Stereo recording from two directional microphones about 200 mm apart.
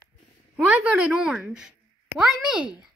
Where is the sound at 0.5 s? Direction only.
5° right (ahead or behind).